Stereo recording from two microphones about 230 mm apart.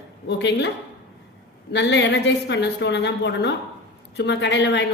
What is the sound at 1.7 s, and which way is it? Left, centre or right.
A woman's voice, left.